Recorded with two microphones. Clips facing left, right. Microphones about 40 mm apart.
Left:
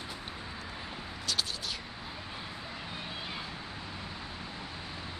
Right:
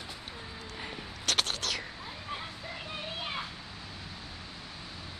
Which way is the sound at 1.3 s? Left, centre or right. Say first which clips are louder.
Right 4 dB; right.